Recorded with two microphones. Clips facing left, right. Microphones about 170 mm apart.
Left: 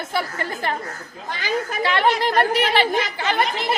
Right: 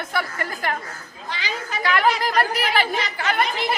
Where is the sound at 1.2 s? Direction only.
50° left (ahead or behind).